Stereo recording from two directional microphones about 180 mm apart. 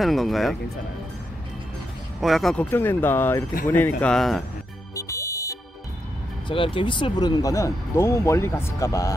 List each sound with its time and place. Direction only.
0.0 s speech: centre (ahead or behind)
2.1 s speech: centre (ahead or behind)
4.9 s music: 15° left (ahead or behind)
6.5 s speech: 30° left (ahead or behind)